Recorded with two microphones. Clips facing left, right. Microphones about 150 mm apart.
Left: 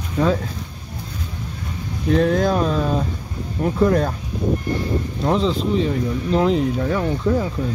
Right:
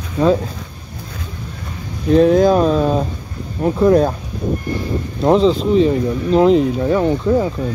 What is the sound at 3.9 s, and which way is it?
Speech, 30° right (ahead or behind).